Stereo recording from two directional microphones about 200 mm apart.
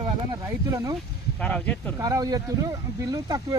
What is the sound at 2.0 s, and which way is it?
Speech, 20° right (ahead or behind).